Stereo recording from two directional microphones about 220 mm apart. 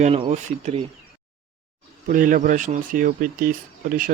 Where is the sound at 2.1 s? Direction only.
35° right (ahead or behind).